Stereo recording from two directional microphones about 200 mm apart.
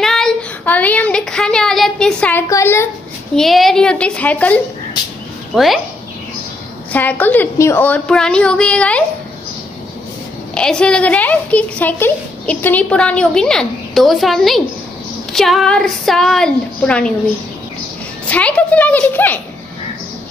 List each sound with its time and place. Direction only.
0.0 s a sound: centre (ahead or behind)
3.3 s a woman's voice: centre (ahead or behind)
6.9 s a woman's voice: 10° left (ahead or behind)
10.5 s a woman's voice: 5° left (ahead or behind)
18.3 s a woman's voice: 5° left (ahead or behind)